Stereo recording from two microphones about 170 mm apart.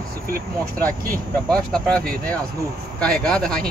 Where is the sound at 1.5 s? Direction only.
5° left (ahead or behind).